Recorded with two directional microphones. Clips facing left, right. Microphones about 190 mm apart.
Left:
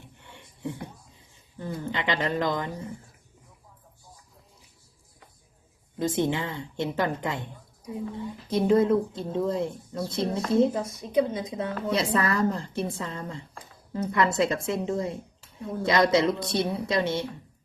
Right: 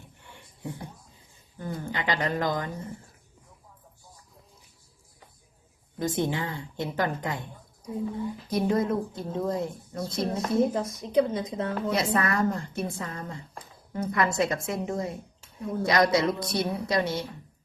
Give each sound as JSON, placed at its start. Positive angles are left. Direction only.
{"t": 0.2, "sound": "a sound", "side_deg": 25}
{"t": 1.5, "sound": "speech", "side_deg": 25}
{"t": 6.0, "sound": "speech", "side_deg": 25}
{"t": 8.4, "sound": "speech", "side_deg": 30}